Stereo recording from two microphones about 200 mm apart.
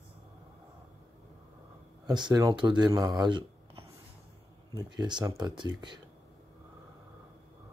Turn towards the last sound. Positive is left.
turn(degrees=-20)  # may be behind; listen again after turning